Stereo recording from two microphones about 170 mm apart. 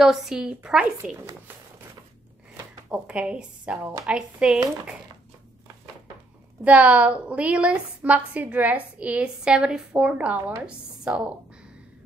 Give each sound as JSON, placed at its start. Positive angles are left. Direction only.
{"t": 0.0, "sound": "a woman's voice", "side_deg": 0}
{"t": 2.9, "sound": "a woman's voice", "side_deg": -5}
{"t": 6.6, "sound": "a woman's voice", "side_deg": -10}